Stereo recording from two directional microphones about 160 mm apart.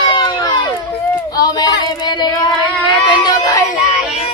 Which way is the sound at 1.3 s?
25° left (ahead or behind).